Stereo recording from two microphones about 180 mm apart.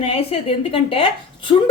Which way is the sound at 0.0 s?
30° left (ahead or behind).